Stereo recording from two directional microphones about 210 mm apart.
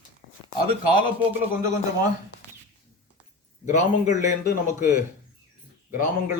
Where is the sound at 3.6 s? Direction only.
35° left (ahead or behind).